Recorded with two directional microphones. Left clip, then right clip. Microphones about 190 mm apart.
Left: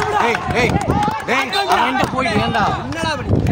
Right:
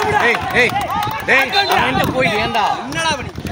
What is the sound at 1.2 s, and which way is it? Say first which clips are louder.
A man's voice: right 8 dB; 65° left (ahead or behind).